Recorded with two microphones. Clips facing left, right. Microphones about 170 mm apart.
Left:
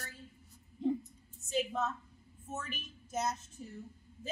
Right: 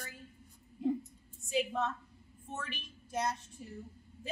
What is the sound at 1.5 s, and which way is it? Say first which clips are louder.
A woman's voice: right 1 dB; centre (ahead or behind).